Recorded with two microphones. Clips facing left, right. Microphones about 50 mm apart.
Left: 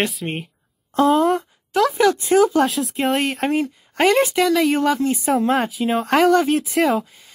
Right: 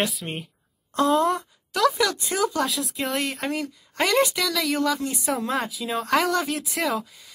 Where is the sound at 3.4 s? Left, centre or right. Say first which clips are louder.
Left 8 dB; left.